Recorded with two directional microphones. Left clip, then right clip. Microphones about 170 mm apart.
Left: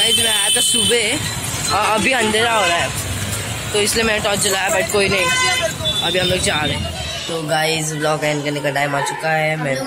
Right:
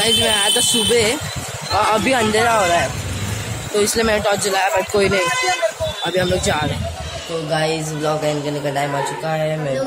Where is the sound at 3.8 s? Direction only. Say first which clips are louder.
Even; 10° right (ahead or behind).